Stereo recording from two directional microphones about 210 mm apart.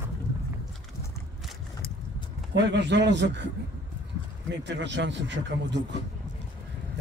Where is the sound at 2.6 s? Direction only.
55° right (ahead or behind).